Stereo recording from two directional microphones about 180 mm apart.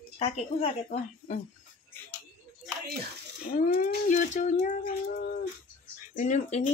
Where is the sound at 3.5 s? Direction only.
50° left (ahead or behind).